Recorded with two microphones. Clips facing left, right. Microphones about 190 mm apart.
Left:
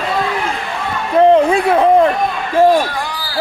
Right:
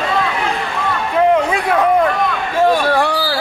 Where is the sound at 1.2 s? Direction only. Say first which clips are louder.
Left 5 dB; 30° left (ahead or behind).